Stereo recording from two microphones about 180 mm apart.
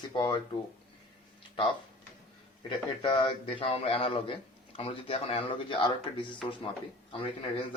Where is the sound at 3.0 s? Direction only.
25° left (ahead or behind).